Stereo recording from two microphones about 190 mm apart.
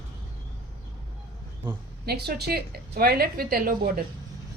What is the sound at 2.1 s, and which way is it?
A woman's voice, 55° right (ahead or behind).